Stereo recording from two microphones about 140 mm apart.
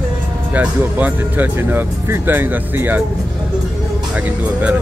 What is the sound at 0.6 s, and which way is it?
Speech, 10° right (ahead or behind).